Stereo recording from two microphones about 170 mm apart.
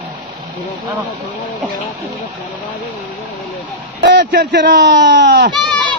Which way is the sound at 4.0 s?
70° right (ahead or behind).